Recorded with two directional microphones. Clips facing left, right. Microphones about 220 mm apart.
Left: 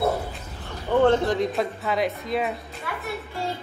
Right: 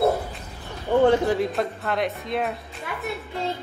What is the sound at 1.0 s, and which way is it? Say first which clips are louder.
A woman's voice: right 1 dB; 10° right (ahead or behind).